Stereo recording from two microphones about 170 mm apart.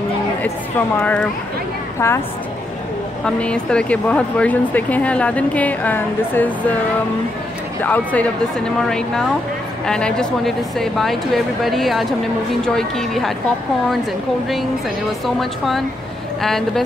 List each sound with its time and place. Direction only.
0.4 s speech: 10° left (ahead or behind)
3.3 s speech: 5° left (ahead or behind)
7.8 s speech: 10° left (ahead or behind)
15.2 s speech: centre (ahead or behind)